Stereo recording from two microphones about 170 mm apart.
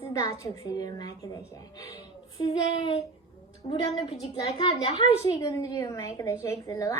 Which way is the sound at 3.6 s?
30° left (ahead or behind).